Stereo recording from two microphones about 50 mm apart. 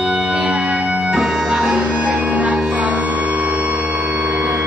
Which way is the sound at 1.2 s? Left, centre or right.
Centre.